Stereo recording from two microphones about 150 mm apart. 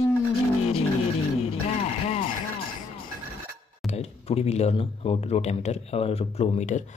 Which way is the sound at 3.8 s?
45° left (ahead or behind).